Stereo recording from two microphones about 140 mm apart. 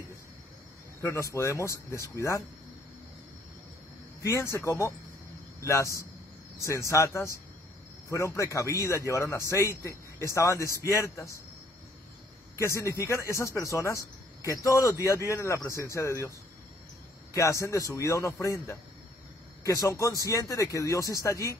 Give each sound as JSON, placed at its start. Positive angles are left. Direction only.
{"t": 1.0, "sound": "speech", "side_deg": 20}
{"t": 4.2, "sound": "speech", "side_deg": 20}
{"t": 12.5, "sound": "a man's voice", "side_deg": 20}